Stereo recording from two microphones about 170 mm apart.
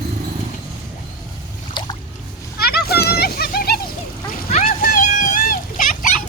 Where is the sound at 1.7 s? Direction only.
25° left (ahead or behind).